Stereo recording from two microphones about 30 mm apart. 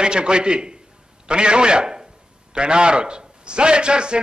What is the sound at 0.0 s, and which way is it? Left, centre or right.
A man's voice, right.